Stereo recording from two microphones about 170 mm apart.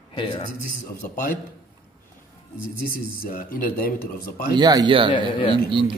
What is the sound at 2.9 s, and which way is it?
Speech, 55° left (ahead or behind).